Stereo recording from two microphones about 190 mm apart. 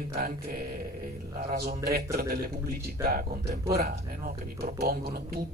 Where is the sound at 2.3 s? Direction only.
55° right (ahead or behind).